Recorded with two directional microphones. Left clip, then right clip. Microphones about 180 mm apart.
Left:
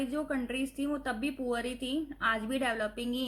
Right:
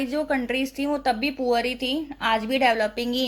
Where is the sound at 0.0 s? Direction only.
20° right (ahead or behind).